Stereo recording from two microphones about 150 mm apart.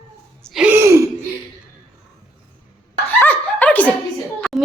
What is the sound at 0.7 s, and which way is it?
Gasp, 15° right (ahead or behind).